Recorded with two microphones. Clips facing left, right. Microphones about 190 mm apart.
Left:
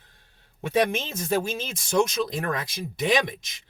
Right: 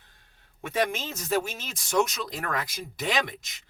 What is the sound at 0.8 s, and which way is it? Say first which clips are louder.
Speech: left 2 dB; 20° left (ahead or behind).